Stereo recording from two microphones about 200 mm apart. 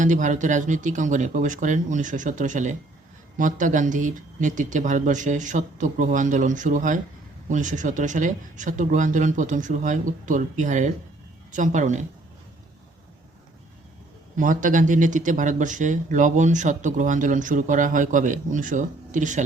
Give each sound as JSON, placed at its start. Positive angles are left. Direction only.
{"t": 0.0, "sound": "speech", "side_deg": -40}
{"t": 14.3, "sound": "speech", "side_deg": -40}